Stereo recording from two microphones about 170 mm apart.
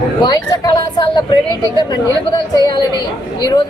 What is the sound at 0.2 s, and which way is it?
Speech, 25° left (ahead or behind).